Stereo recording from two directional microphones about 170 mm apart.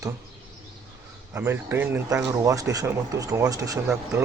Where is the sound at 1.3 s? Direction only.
15° right (ahead or behind).